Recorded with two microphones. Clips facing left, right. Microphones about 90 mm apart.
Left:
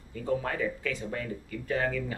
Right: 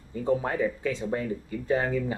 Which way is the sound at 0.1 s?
25° right (ahead or behind).